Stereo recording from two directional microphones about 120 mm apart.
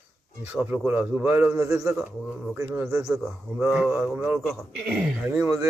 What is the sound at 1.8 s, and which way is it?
Speech, centre (ahead or behind).